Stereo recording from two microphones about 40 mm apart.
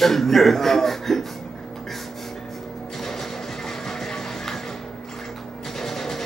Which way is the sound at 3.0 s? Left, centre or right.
Centre.